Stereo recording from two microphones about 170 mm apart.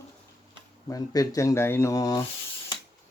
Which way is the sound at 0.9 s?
20° left (ahead or behind).